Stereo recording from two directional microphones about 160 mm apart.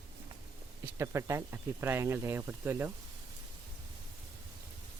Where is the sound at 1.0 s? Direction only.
15° right (ahead or behind).